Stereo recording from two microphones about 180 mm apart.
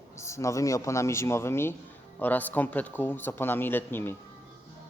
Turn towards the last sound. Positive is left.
turn(degrees=10)  # may be behind; listen again after turning